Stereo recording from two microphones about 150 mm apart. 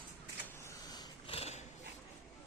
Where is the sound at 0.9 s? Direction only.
25° left (ahead or behind).